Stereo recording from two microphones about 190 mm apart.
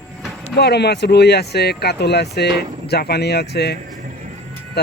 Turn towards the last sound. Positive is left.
turn(degrees=60)  # may be behind; listen again after turning